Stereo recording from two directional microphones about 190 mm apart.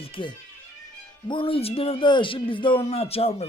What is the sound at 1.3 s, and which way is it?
A man's voice, 25° left (ahead or behind).